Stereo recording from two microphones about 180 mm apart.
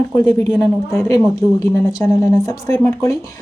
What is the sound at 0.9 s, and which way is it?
A woman's voice, 15° left (ahead or behind).